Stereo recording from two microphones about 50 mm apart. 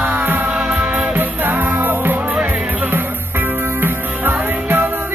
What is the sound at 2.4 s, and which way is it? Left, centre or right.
Music, right.